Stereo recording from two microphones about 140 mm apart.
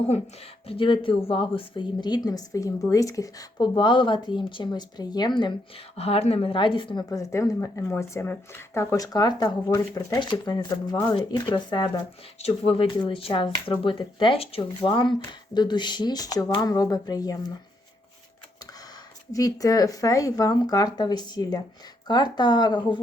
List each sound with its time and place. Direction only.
0.7 s speech: 40° left (ahead or behind)
6.0 s speech: 45° left (ahead or behind)
7.1 s speech: 20° left (ahead or behind)
12.4 s speech: 45° left (ahead or behind); by 17.3 s 25° left (ahead or behind)
19.3 s speech: 25° left (ahead or behind)